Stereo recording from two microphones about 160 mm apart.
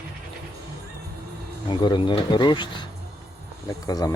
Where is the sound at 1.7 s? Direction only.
30° left (ahead or behind).